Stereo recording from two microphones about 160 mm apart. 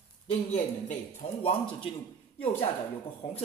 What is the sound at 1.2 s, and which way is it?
Speech, 50° left (ahead or behind).